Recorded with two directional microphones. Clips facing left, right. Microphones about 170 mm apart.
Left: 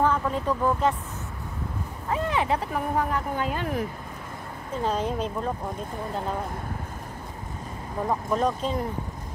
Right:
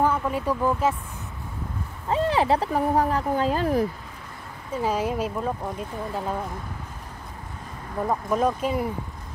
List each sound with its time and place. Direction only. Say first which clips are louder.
0.0 s speech: right 1 dB; 10° right (ahead or behind)
2.0 s speech: right 4 dB; 30° right (ahead or behind)
4.8 s speech: right 2 dB; 10° right (ahead or behind)
8.1 s speech: right 2 dB; 5° right (ahead or behind)